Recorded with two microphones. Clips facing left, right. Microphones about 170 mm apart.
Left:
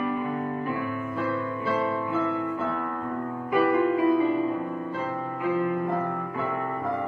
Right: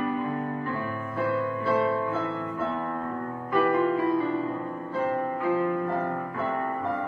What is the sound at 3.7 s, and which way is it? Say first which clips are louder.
Music: left 2 dB; 20° left (ahead or behind).